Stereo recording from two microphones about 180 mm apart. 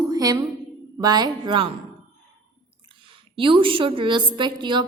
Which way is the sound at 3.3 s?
30° right (ahead or behind).